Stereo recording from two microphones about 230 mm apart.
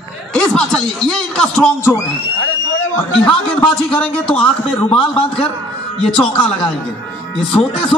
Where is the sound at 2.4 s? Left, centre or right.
Left.